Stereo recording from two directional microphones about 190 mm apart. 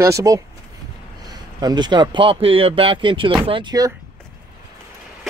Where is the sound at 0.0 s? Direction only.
15° right (ahead or behind).